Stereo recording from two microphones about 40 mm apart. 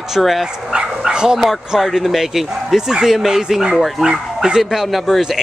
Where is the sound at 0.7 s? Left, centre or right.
Centre.